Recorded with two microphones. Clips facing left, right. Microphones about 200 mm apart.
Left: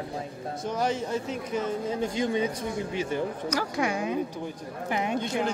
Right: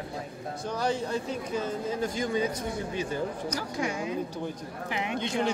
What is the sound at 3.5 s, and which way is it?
Speech, 70° left (ahead or behind).